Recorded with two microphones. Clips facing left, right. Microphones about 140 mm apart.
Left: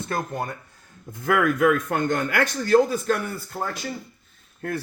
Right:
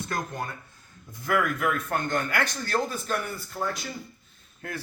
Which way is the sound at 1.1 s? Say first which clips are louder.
Left 5 dB; 60° left (ahead or behind).